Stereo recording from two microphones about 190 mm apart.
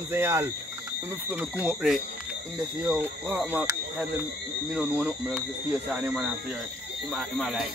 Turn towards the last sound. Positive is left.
turn(degrees=0)  # may be behind; listen again after turning